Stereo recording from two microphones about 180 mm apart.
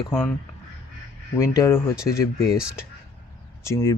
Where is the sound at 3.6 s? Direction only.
15° left (ahead or behind).